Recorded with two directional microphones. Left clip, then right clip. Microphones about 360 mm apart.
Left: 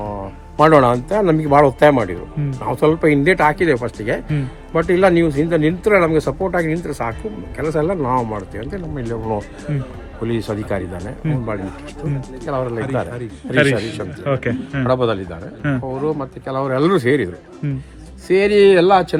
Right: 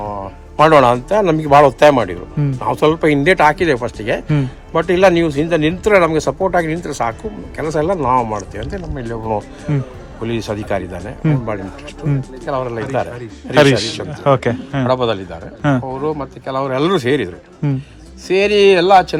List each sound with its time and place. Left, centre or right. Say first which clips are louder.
0.6 s a man's voice: right 2 dB; centre